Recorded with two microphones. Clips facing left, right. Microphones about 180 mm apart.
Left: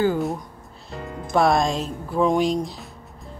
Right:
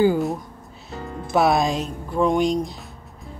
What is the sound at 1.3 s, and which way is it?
Speech, 5° right (ahead or behind).